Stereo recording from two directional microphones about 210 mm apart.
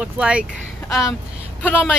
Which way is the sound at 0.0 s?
5° right (ahead or behind).